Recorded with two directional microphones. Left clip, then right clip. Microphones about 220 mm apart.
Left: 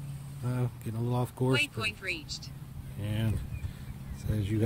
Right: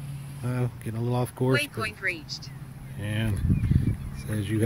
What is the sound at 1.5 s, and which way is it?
Speech, 20° left (ahead or behind).